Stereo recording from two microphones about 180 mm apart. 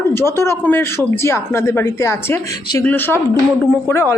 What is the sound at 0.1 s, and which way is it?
A woman's voice, 15° left (ahead or behind).